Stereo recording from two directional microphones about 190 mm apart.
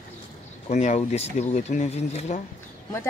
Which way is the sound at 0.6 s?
35° left (ahead or behind).